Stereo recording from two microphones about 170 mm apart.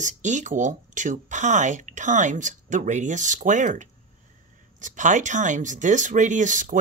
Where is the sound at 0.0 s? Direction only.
45° right (ahead or behind).